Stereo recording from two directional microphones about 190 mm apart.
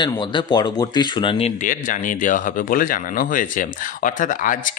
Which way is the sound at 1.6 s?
45° left (ahead or behind).